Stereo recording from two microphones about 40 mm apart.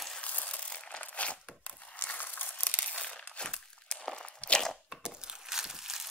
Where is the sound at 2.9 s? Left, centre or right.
Left.